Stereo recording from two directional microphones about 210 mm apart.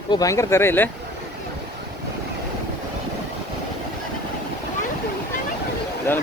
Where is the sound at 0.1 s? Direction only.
15° left (ahead or behind).